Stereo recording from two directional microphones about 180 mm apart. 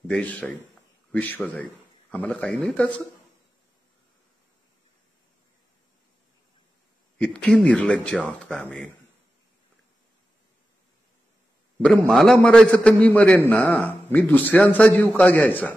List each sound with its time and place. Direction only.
0.1 s a man's voice: 10° left (ahead or behind)
7.2 s speech: 5° left (ahead or behind)
12.1 s a man's voice: centre (ahead or behind)